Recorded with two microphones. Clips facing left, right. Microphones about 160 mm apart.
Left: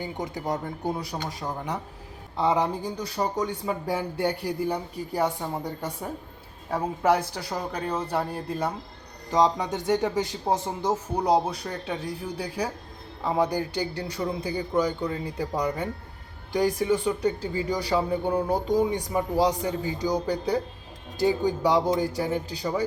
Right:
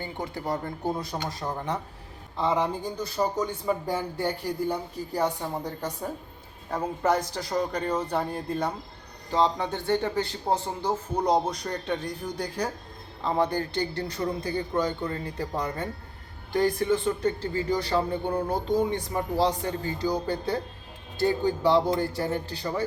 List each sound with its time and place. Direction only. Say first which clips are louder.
0.0 s a man's voice: left 1 dB; 15° left (ahead or behind)
11.3 s a man's voice: left 2 dB; 5° left (ahead or behind)